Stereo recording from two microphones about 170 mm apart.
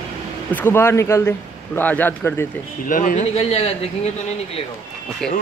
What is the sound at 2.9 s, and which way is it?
Speech, 50° left (ahead or behind).